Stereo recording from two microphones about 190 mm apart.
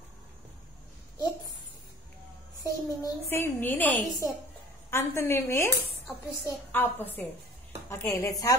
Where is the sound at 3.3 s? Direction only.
10° left (ahead or behind).